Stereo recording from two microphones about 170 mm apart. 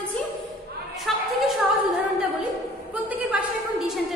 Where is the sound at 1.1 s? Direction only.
Centre (ahead or behind).